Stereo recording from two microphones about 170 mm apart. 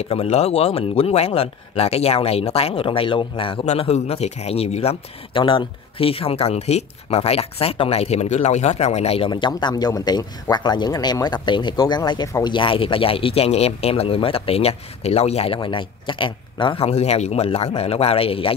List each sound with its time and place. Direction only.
0.0 s speech: 35° left (ahead or behind)